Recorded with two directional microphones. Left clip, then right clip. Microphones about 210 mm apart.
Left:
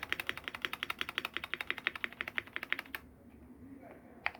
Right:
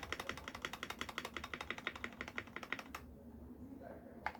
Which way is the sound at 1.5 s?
5° left (ahead or behind).